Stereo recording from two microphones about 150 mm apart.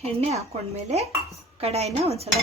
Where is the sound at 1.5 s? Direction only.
45° right (ahead or behind).